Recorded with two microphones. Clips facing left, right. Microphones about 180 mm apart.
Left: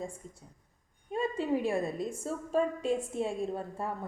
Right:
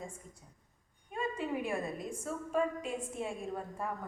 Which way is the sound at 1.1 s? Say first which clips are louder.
Left 5 dB; 30° left (ahead or behind).